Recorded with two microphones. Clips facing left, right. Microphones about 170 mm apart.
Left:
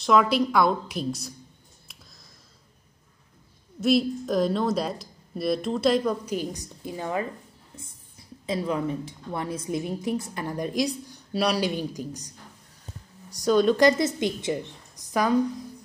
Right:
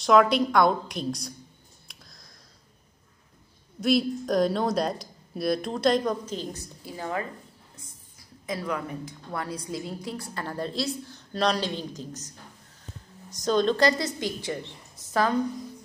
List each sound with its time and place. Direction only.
0.0 s a woman's voice: centre (ahead or behind)
1.9 s a sound: 5° left (ahead or behind)
3.8 s a woman's voice: centre (ahead or behind)
13.4 s speech: 10° left (ahead or behind)